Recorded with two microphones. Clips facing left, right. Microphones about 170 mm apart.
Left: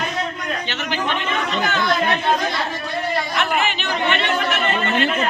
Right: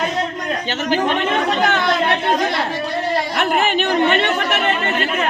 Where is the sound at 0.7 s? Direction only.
40° right (ahead or behind).